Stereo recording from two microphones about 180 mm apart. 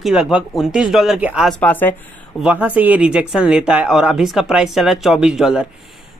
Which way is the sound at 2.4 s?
10° right (ahead or behind).